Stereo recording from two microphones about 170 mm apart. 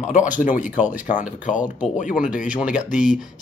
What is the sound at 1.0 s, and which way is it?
Speech, 45° left (ahead or behind).